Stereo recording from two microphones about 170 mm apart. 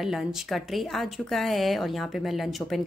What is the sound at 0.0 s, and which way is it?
A woman's voice, centre (ahead or behind).